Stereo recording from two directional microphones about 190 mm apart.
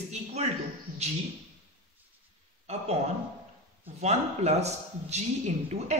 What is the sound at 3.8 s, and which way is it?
A woman's voice, 35° right (ahead or behind).